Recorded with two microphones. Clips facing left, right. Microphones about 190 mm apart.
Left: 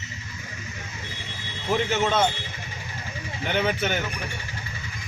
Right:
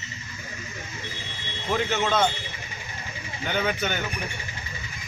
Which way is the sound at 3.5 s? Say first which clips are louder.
Left 2 dB; centre (ahead or behind).